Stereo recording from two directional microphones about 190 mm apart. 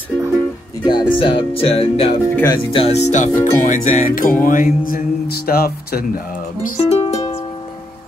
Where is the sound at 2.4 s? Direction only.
25° left (ahead or behind).